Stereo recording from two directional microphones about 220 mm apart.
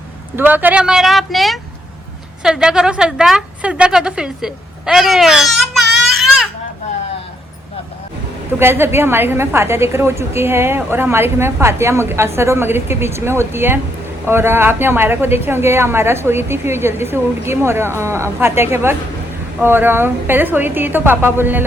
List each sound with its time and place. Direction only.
0.3 s a woman's voice: 10° right (ahead or behind)
8.5 s a woman's voice: 10° right (ahead or behind)